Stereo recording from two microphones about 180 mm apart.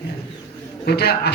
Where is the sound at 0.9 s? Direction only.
65° left (ahead or behind).